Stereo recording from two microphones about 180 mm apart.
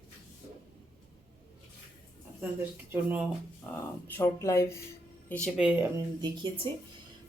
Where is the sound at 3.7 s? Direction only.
5° left (ahead or behind).